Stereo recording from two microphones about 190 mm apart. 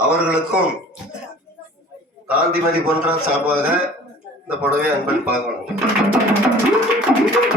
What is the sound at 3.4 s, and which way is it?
Speech, 10° right (ahead or behind).